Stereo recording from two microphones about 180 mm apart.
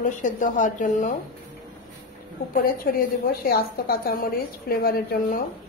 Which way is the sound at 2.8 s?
55° left (ahead or behind).